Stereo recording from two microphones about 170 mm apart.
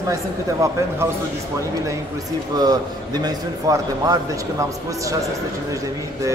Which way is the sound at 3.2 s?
20° right (ahead or behind).